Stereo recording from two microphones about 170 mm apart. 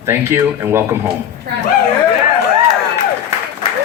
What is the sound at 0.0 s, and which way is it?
Speech, 15° right (ahead or behind).